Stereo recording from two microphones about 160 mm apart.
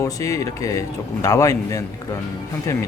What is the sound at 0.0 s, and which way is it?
Speech, 20° left (ahead or behind).